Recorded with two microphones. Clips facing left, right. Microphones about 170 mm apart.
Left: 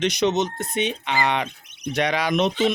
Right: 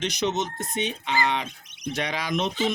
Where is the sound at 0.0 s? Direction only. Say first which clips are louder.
Left 5 dB; 70° left (ahead or behind).